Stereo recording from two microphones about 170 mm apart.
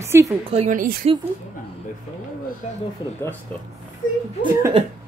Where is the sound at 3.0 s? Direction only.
25° left (ahead or behind).